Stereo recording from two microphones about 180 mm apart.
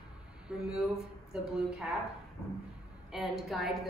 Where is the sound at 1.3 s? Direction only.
Centre (ahead or behind).